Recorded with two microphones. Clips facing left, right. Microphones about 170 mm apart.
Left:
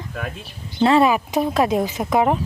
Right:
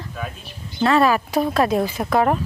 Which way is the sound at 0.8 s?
25° left (ahead or behind).